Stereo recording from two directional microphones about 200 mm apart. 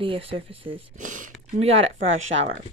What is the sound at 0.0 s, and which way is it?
Speech, 25° right (ahead or behind).